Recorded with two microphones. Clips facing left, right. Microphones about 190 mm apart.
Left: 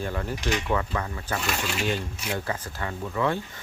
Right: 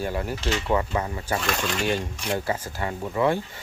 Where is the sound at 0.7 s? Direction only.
20° right (ahead or behind).